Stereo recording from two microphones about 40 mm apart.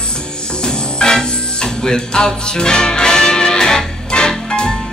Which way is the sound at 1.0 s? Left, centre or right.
Left.